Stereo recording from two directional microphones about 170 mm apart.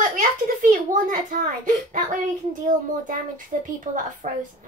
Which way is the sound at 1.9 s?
50° right (ahead or behind).